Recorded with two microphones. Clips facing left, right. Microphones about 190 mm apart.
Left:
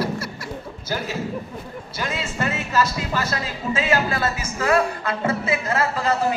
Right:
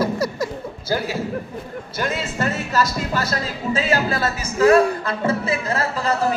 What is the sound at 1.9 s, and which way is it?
Speech, 45° right (ahead or behind).